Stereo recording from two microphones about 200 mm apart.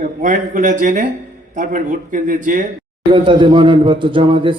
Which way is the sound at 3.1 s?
25° right (ahead or behind).